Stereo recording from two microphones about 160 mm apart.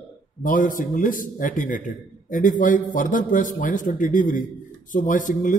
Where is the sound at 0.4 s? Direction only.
55° left (ahead or behind).